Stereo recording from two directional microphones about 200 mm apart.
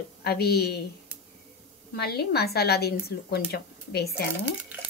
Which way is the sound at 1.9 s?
55° left (ahead or behind).